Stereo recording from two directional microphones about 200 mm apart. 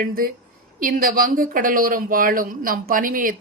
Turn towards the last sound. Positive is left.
turn(degrees=-45)  # may be behind; listen again after turning